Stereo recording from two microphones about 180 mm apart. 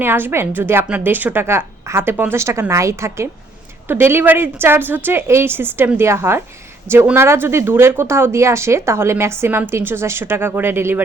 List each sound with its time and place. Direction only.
0.0 s speech: 10° right (ahead or behind)